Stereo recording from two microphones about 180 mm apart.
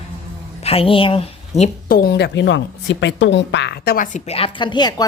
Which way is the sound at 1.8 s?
55° left (ahead or behind).